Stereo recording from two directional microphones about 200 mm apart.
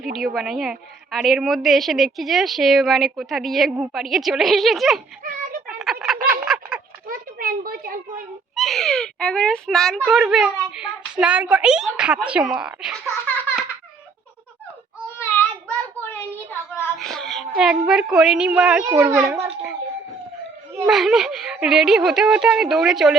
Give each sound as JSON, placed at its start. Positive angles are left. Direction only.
{"t": 0.1, "sound": "a woman's voice", "side_deg": 0}
{"t": 5.6, "sound": "fowl", "side_deg": 0}
{"t": 6.2, "sound": "frog", "side_deg": -5}
{"t": 7.1, "sound": "a sound", "side_deg": -45}
{"t": 8.5, "sound": "a woman's voice", "side_deg": 0}
{"t": 16.5, "sound": "a sound", "side_deg": 10}
{"t": 18.9, "sound": "a child's voice", "side_deg": -10}
{"t": 20.8, "sound": "a woman's voice", "side_deg": 0}